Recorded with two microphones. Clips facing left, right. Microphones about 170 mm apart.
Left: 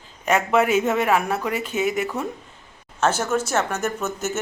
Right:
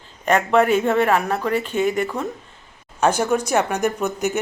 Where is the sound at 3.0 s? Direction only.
15° right (ahead or behind).